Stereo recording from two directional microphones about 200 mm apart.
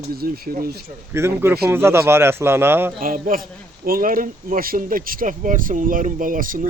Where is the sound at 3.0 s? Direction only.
45° right (ahead or behind).